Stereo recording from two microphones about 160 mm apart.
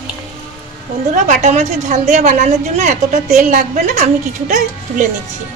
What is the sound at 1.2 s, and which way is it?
A woman's voice, 50° right (ahead or behind).